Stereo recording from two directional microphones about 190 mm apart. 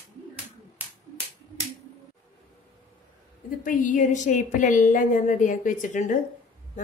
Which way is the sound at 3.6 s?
45° left (ahead or behind).